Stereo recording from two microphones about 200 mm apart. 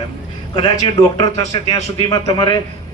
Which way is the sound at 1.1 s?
20° left (ahead or behind).